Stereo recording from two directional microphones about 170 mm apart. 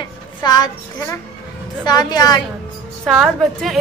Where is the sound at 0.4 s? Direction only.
25° left (ahead or behind).